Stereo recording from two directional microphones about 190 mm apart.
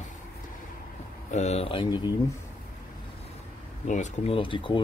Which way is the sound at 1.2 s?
35° left (ahead or behind).